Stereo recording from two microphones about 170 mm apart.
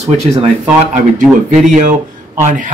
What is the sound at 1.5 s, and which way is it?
Speech, 45° right (ahead or behind).